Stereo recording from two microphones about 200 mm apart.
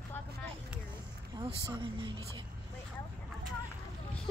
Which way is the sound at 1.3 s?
25° right (ahead or behind).